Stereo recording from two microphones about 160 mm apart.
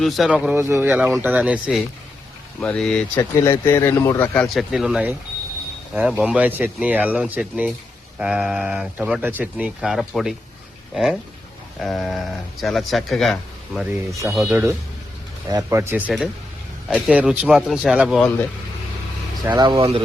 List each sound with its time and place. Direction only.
0.0 s speech: centre (ahead or behind)
0.5 s speech: 15° right (ahead or behind)
2.6 s speech: 5° left (ahead or behind)
3.4 s speech: 15° left (ahead or behind)
4.4 s speech: centre (ahead or behind)
14.5 s speech: 15° right (ahead or behind)
19.5 s speech: 25° right (ahead or behind)